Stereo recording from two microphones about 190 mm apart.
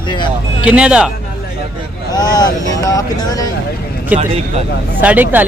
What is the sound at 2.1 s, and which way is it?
Speech, 20° left (ahead or behind).